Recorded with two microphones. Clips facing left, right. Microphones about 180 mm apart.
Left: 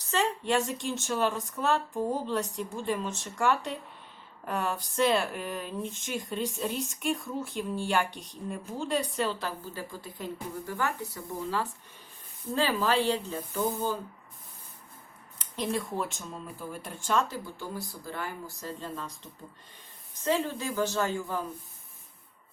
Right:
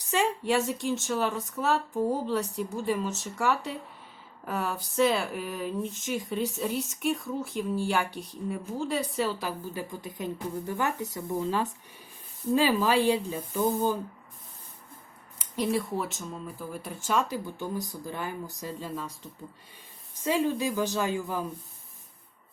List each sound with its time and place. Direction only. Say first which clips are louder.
0.0 s speech: right 2 dB; 10° right (ahead or behind)
15.4 s speech: right 3 dB; 5° right (ahead or behind)
20.2 s speech: right 3 dB; 10° right (ahead or behind)